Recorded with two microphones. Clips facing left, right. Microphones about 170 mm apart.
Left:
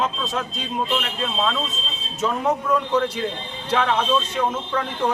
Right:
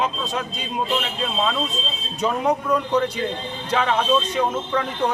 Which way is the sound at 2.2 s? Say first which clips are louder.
Right 1 dB; 5° left (ahead or behind).